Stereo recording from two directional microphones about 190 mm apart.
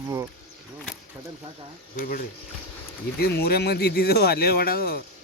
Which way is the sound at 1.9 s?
45° left (ahead or behind).